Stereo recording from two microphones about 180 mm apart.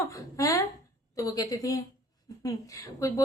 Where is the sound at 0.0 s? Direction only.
20° left (ahead or behind).